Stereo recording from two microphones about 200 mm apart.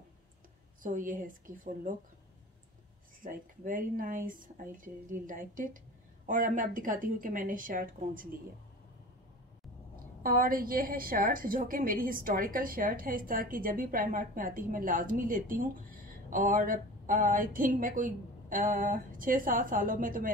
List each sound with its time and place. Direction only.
0.8 s speech: 40° right (ahead or behind)
3.2 s a woman's voice: 45° right (ahead or behind)
10.2 s a woman's voice: 45° right (ahead or behind)